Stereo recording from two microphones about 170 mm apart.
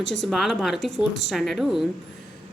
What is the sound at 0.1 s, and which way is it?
Speech, centre (ahead or behind).